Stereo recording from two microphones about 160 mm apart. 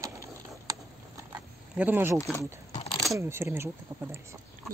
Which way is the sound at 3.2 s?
15° right (ahead or behind).